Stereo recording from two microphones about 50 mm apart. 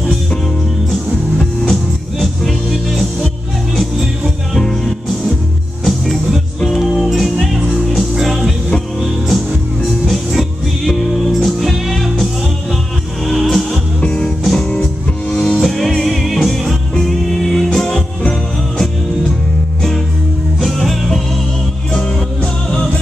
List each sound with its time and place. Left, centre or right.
1.4 s music: centre
5.9 s music: centre
10.9 s music: centre
13.3 s music: centre
14.0 s music: left
14.4 s music: centre
15.3 s music: centre
15.6 s music: centre
20.6 s music: centre